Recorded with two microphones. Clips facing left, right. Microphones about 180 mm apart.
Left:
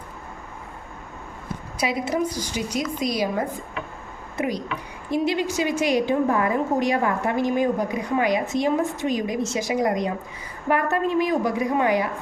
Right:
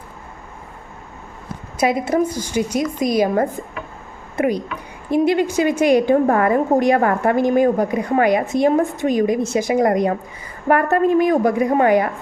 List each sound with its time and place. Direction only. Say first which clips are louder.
1.8 s a woman's voice: right 6 dB; 50° right (ahead or behind)